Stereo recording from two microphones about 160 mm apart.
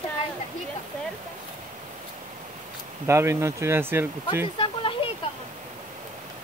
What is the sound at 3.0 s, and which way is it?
Speech, 15° right (ahead or behind).